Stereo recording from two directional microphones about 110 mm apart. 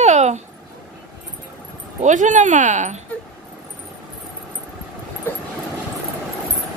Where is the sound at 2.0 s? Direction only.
90° right.